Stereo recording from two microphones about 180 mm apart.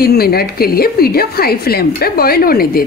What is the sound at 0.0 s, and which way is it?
A woman's voice, 60° left (ahead or behind).